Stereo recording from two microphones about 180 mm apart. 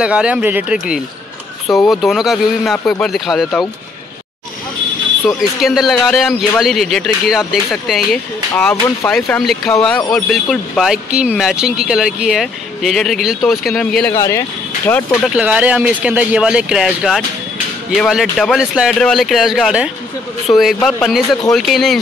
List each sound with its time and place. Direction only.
0.0 s speech: 5° right (ahead or behind)
5.6 s speech: centre (ahead or behind)
14.1 s speech: 15° left (ahead or behind)
15.0 s speech: 5° right (ahead or behind)